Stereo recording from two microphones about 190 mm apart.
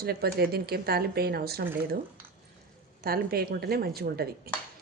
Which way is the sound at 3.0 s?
55° right (ahead or behind).